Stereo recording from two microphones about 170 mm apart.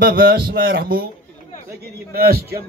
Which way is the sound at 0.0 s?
60° right (ahead or behind).